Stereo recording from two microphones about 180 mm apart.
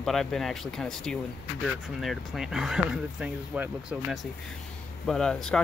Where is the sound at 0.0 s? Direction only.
Centre (ahead or behind).